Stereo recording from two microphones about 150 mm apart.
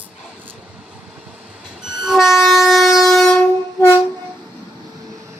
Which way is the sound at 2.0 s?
Centre (ahead or behind).